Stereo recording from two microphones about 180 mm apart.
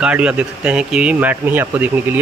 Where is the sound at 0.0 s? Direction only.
5° right (ahead or behind).